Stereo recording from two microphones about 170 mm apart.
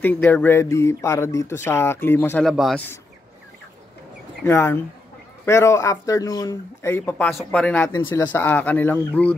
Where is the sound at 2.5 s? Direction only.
Centre (ahead or behind).